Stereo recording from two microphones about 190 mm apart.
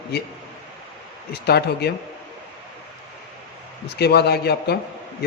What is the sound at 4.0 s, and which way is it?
Speech, 60° left (ahead or behind).